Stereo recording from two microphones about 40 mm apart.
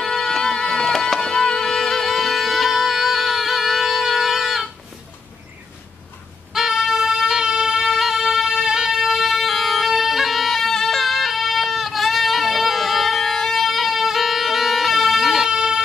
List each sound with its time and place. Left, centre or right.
0.1 s music: centre
6.5 s music: centre
9.2 s music: centre
15.5 s a sound: centre